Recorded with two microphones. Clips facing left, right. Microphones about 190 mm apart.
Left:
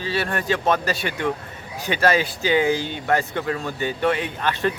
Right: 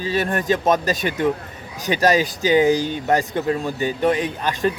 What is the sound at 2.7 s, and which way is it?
Speech, 40° right (ahead or behind).